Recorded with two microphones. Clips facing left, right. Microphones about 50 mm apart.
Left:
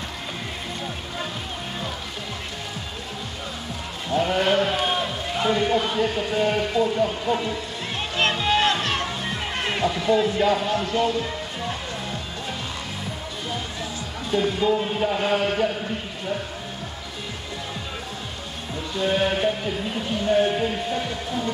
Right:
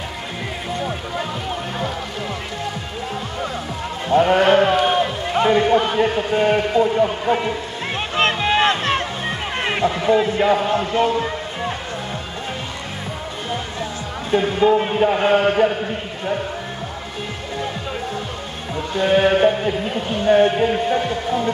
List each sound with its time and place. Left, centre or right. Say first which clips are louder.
4.1 s a man's voice: right 7 dB; right
7.4 s music: right 5 dB; right
14.3 s a man's voice: right 6 dB; right
18.9 s speech: right 7 dB; right